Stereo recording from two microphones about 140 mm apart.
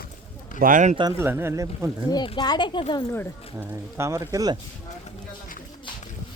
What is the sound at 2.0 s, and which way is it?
Speech, 30° left (ahead or behind).